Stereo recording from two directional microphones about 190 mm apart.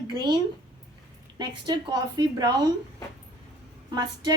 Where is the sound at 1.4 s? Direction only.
20° right (ahead or behind).